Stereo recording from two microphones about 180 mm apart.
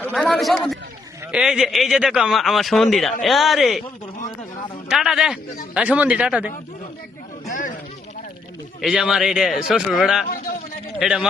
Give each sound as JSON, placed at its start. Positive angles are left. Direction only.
{"t": 0.0, "sound": "speech", "side_deg": 5}
{"t": 4.9, "sound": "speech", "side_deg": 0}
{"t": 7.5, "sound": "a sound", "side_deg": 45}
{"t": 8.8, "sound": "speech", "side_deg": 0}
{"t": 10.2, "sound": "a man's voice", "side_deg": 50}
{"t": 11.0, "sound": "speech", "side_deg": 0}